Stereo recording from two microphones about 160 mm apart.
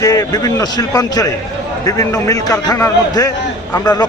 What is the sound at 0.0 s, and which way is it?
A man's voice, 20° left (ahead or behind).